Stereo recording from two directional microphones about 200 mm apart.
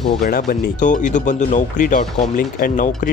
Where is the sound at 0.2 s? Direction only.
45° left (ahead or behind).